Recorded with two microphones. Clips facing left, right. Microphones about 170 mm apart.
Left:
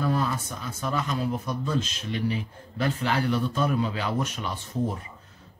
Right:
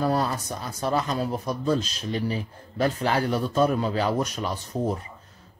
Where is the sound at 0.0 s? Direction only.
40° right (ahead or behind).